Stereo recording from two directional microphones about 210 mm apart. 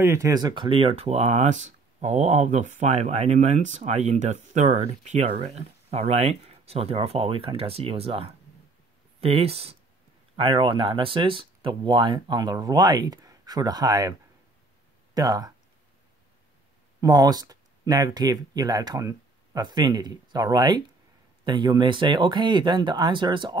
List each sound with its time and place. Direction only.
0.0 s speech: 15° right (ahead or behind)
15.1 s speech: 20° right (ahead or behind)
17.0 s speech: 20° right (ahead or behind)